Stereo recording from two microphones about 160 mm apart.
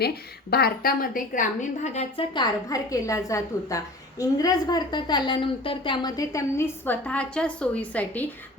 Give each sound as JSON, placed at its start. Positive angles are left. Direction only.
{"t": 0.0, "sound": "a woman's voice", "side_deg": 80}
{"t": 2.3, "sound": "a woman's voice", "side_deg": 25}